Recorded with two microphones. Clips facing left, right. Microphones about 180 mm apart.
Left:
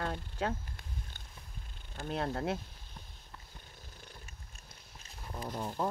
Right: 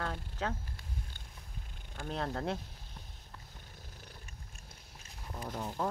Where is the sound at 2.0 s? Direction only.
5° left (ahead or behind).